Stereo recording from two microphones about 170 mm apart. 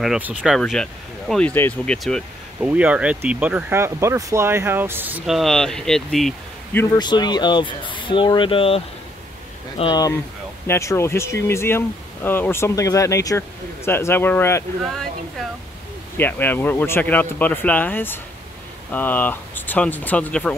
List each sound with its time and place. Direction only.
0.0 s speech: 5° right (ahead or behind)
0.6 s speech: 5° left (ahead or behind)
2.6 s speech: 10° right (ahead or behind)
6.8 s speech: 25° left (ahead or behind)
16.2 s speech: 10° left (ahead or behind)